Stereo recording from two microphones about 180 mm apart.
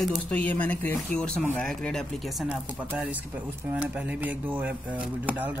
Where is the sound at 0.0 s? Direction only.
5° left (ahead or behind).